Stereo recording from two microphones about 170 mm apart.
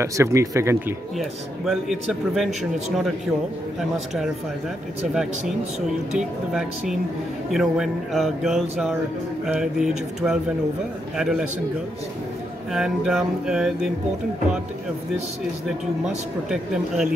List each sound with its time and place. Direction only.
0.0 s speech: 15° right (ahead or behind)
1.7 s speech: centre (ahead or behind)
6.1 s speech: 5° right (ahead or behind)
12.7 s speech: centre (ahead or behind)
16.4 s speech: 5° right (ahead or behind)